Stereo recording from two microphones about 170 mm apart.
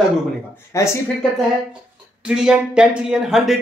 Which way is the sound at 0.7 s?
15° left (ahead or behind).